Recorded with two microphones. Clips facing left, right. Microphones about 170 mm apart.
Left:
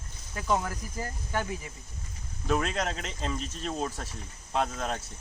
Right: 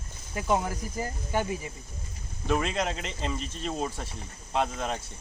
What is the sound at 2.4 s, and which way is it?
Speech, centre (ahead or behind).